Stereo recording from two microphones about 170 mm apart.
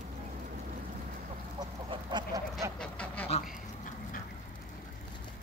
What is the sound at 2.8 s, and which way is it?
Duck, 10° left (ahead or behind).